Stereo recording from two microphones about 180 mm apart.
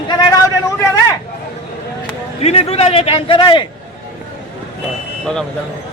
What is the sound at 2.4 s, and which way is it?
A man's voice, 35° left (ahead or behind).